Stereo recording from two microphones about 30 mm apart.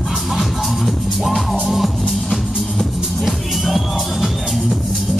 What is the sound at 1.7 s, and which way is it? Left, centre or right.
Music, centre.